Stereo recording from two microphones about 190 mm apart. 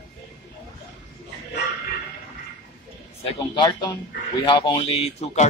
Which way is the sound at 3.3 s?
25° left (ahead or behind).